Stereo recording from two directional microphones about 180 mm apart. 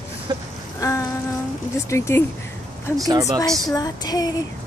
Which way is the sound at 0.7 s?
15° left (ahead or behind).